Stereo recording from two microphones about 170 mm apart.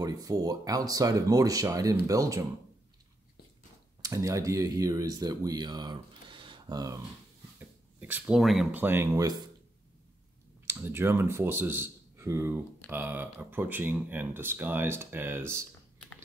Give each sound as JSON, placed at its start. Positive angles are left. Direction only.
{"t": 0.0, "sound": "speech", "side_deg": -20}
{"t": 4.0, "sound": "speech", "side_deg": -20}
{"t": 7.5, "sound": "a sound", "side_deg": -10}
{"t": 8.7, "sound": "speech", "side_deg": -15}
{"t": 10.7, "sound": "speech", "side_deg": -15}